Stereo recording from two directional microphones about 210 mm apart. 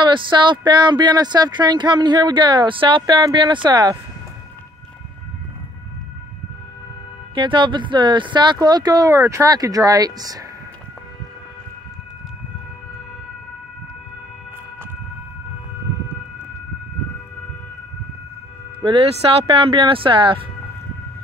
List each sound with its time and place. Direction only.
0.0 s speech: 20° right (ahead or behind)
7.3 s speech: 25° right (ahead or behind)
18.8 s speech: 25° right (ahead or behind)